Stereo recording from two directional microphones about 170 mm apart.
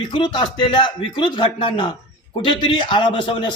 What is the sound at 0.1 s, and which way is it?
Speech, 25° left (ahead or behind).